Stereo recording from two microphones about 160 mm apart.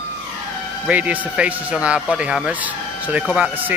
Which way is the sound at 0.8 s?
10° right (ahead or behind).